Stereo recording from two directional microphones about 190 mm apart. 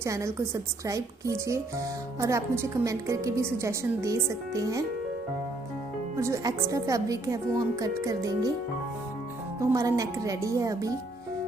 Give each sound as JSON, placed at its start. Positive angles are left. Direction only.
{"t": 0.0, "sound": "a woman's voice", "side_deg": -15}
{"t": 6.1, "sound": "a woman's voice", "side_deg": -15}
{"t": 9.6, "sound": "a woman's voice", "side_deg": -15}